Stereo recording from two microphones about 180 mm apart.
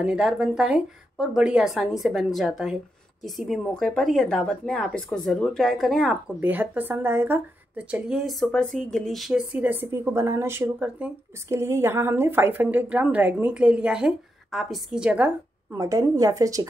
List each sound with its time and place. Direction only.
0.0 s speech: 5° right (ahead or behind)
6.4 s speech: 10° right (ahead or behind)
15.8 s a woman's voice: 20° right (ahead or behind)